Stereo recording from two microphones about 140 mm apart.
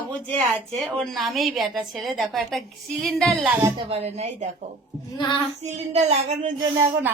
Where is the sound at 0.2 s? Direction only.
10° left (ahead or behind).